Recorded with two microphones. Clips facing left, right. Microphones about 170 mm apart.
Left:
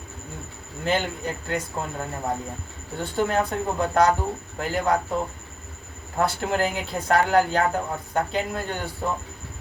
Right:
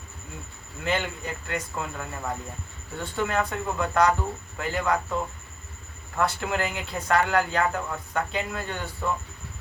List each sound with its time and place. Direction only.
0.9 s speech: 35° left (ahead or behind)
6.1 s speech: 35° left (ahead or behind)